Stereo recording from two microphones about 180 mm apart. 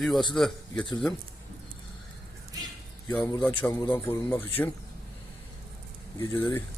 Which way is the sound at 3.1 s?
15° left (ahead or behind).